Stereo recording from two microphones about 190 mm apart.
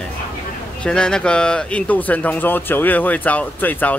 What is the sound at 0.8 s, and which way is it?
Speech, 5° left (ahead or behind).